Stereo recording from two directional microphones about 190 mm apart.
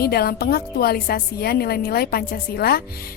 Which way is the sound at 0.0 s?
55° left (ahead or behind).